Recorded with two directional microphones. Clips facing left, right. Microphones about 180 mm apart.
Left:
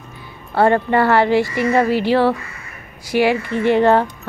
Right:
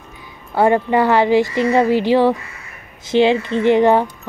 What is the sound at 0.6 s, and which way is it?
Speech, 15° right (ahead or behind).